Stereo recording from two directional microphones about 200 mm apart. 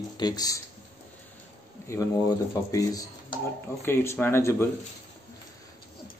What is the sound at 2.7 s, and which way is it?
Speech, 15° left (ahead or behind).